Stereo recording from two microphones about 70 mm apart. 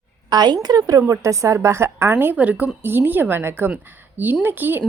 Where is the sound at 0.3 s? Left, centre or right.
Right.